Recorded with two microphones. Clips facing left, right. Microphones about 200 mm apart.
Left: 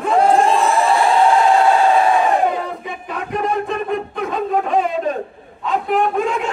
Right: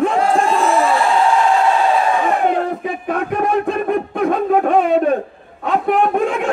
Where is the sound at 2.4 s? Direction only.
55° right (ahead or behind).